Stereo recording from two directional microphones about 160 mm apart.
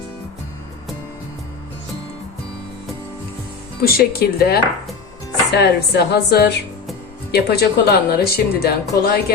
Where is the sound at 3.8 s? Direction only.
70° left (ahead or behind).